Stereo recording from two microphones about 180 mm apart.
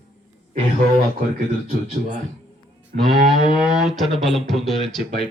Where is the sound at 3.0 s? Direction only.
Centre (ahead or behind).